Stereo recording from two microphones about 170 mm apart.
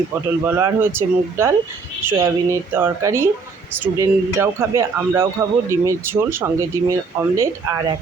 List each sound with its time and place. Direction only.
0.4 s speech: 15° right (ahead or behind)